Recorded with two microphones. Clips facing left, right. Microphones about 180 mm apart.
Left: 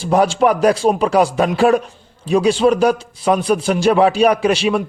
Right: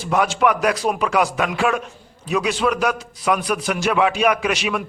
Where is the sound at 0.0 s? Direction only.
30° left (ahead or behind).